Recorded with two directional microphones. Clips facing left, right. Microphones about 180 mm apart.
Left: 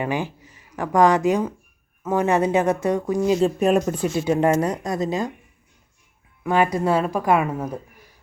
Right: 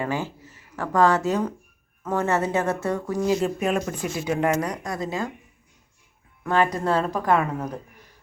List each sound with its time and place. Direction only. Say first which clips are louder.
0.0 s speech: left 2 dB; 15° left (ahead or behind)
3.4 s speech: left 6 dB; 40° left (ahead or behind)
4.0 s speech: left 5 dB; 30° left (ahead or behind)
6.4 s speech: left 2 dB; 10° left (ahead or behind)